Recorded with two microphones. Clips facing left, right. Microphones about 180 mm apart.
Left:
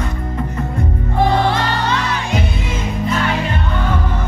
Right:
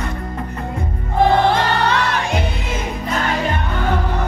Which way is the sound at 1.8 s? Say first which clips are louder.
Right 1 dB; 60° right (ahead or behind).